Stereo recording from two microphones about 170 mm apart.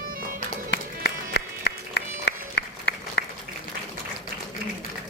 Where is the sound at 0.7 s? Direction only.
80° left.